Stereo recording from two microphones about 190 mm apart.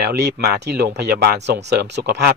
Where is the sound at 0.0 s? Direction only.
60° right (ahead or behind).